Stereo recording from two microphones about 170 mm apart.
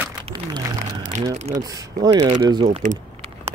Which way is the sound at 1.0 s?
45° right (ahead or behind).